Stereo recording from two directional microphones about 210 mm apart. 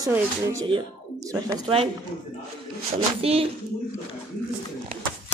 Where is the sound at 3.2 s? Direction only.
25° right (ahead or behind).